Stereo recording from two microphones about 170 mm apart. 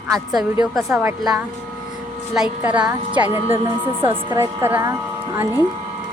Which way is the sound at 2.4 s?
5° right (ahead or behind).